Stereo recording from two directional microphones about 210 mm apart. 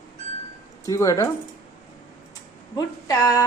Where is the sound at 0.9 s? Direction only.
15° left (ahead or behind).